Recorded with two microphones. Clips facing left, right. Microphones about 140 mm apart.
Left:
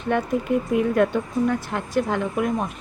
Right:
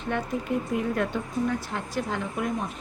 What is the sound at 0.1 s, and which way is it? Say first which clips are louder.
A woman's voice: left 6 dB; 60° left (ahead or behind).